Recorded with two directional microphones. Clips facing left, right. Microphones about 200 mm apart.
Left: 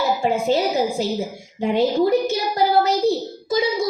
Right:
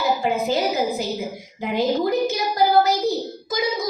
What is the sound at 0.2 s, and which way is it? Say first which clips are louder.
Child singing: left 2 dB; 30° left (ahead or behind).